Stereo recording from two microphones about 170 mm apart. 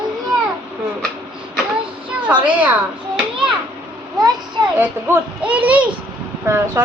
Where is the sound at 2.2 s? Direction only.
5° right (ahead or behind).